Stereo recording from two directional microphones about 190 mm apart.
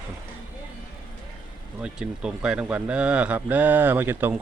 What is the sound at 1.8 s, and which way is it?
Speech, 5° right (ahead or behind).